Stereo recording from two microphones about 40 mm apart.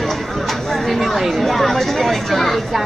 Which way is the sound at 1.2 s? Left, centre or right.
Centre.